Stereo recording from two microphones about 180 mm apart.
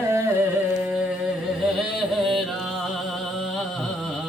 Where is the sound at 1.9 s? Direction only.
Centre (ahead or behind).